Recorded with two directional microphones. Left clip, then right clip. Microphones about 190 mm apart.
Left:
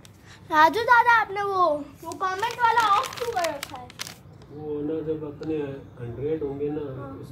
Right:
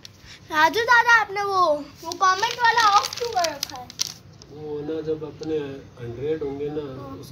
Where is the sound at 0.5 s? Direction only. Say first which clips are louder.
Even; 35° left (ahead or behind).